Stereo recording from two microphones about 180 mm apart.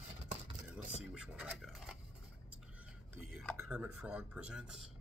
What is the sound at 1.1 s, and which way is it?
Speech, 5° right (ahead or behind).